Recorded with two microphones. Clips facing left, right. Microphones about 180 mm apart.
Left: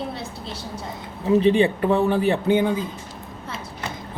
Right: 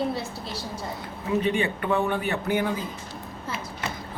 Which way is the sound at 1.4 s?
35° left (ahead or behind).